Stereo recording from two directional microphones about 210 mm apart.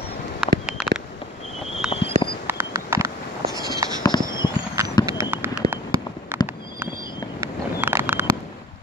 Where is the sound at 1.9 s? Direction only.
25° left (ahead or behind).